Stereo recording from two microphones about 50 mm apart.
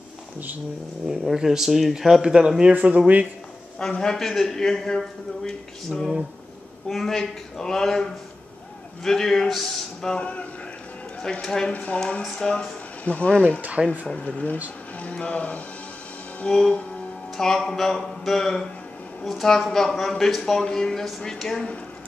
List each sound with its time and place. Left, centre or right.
1.3 s speech: centre
2.7 s speech: right
4.0 s a man's voice: centre
10.1 s speech: left
11.4 s a man's voice: centre
11.7 s speech: left
12.0 s a man's voice: centre
13.6 s speech: right
14.0 s speech: left
16.4 s a man's voice: centre